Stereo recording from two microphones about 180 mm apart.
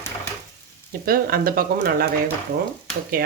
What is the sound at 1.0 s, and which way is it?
Speech, 55° right (ahead or behind).